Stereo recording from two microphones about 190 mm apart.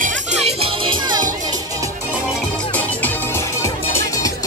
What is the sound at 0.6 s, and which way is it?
Music, 25° right (ahead or behind).